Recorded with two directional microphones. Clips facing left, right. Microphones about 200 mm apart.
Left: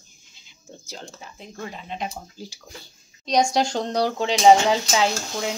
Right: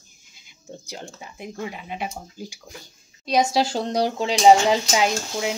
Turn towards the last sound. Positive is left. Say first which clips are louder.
# right 1 dB
turn(degrees=-10)  # may be behind; listen again after turning